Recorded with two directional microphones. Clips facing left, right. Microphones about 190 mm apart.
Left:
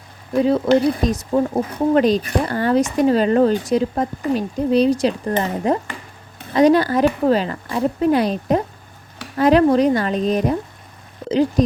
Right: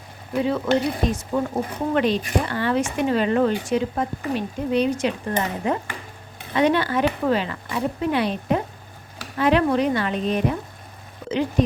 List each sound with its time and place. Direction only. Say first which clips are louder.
0.4 s speech: left 6 dB; 35° left (ahead or behind)